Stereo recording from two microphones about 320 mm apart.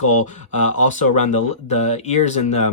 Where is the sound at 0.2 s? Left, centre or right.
Left.